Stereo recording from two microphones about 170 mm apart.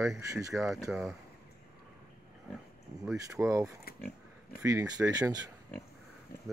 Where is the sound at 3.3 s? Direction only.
15° right (ahead or behind).